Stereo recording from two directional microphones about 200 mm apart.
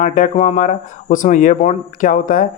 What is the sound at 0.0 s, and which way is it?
Speech, 40° left (ahead or behind).